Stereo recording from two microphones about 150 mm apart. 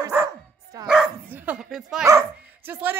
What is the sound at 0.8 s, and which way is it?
Dog, 10° right (ahead or behind).